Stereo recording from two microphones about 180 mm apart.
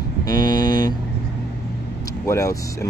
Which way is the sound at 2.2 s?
15° left (ahead or behind).